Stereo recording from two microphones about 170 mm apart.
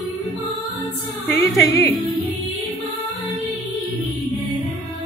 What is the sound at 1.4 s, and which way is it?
Speech, 15° left (ahead or behind).